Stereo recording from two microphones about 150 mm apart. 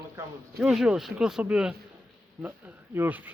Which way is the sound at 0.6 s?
5° right (ahead or behind).